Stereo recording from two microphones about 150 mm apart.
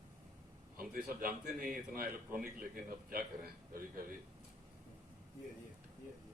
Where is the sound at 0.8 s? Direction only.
75° right (ahead or behind).